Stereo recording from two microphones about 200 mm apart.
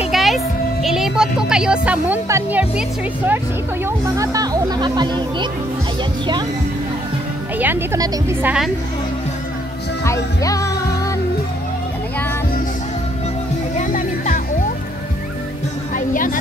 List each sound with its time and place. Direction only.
0.1 s music: centre (ahead or behind)
0.8 s speech: centre (ahead or behind)
3.8 s speech: 15° right (ahead or behind)
7.5 s speech: 10° right (ahead or behind)
10.0 s music: 15° left (ahead or behind)
13.7 s music: 35° left (ahead or behind)
16.1 s a woman's voice: 45° left (ahead or behind)